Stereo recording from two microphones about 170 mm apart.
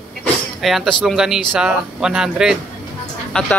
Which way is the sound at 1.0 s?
5° right (ahead or behind).